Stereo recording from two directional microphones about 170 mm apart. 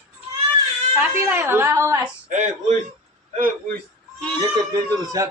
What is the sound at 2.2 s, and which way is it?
Speech, 45° right (ahead or behind).